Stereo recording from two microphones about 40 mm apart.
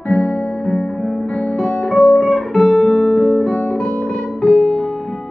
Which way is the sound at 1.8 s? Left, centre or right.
Left.